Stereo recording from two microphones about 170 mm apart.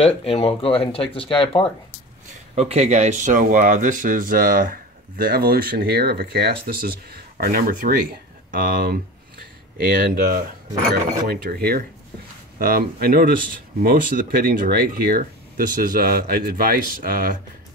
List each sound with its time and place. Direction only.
0.0 s speech: 35° left (ahead or behind)
2.5 s speech: 40° right (ahead or behind); by 17.4 s 55° right (ahead or behind)